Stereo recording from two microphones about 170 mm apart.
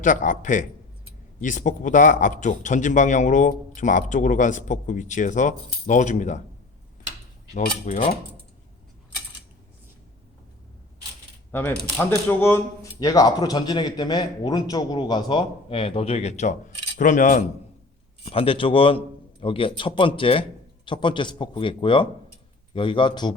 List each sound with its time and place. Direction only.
0.0 s a man's voice: 50° left (ahead or behind)
7.9 s a man's voice: 40° left (ahead or behind)
11.9 s speech: 10° left (ahead or behind); by 17.4 s 50° left (ahead or behind)
18.2 s a man's voice: 35° left (ahead or behind)